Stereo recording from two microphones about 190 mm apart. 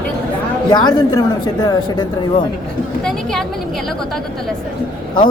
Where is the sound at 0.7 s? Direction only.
20° left (ahead or behind).